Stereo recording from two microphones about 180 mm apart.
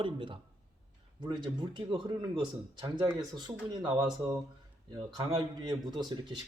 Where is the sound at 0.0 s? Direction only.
30° right (ahead or behind).